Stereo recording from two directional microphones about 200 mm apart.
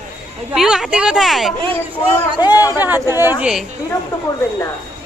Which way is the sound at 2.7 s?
10° right (ahead or behind).